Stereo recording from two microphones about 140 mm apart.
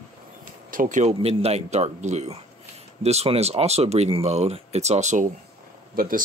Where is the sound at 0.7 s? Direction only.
75° right (ahead or behind).